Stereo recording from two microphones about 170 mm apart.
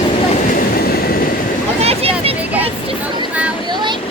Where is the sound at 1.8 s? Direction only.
35° right (ahead or behind).